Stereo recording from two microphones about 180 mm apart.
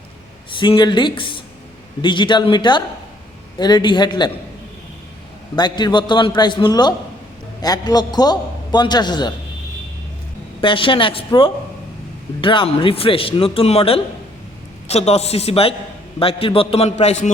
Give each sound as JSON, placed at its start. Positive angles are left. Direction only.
{"t": 0.5, "sound": "a man's voice", "side_deg": 25}
{"t": 5.5, "sound": "a man's voice", "side_deg": 25}
{"t": 10.6, "sound": "a man's voice", "side_deg": 30}